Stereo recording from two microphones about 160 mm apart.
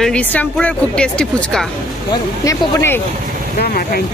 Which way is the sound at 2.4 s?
20° left (ahead or behind).